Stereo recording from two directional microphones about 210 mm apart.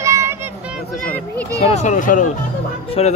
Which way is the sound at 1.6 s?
30° left (ahead or behind).